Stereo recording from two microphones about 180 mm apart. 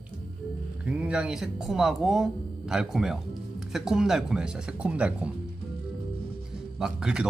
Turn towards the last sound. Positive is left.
turn(degrees=-5)  # may be behind; listen again after turning